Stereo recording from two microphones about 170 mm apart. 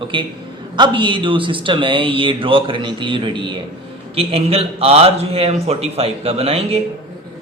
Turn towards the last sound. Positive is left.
turn(degrees=-35)  # may be behind; listen again after turning